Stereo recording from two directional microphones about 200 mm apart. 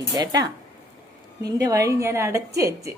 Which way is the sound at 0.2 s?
20° right (ahead or behind).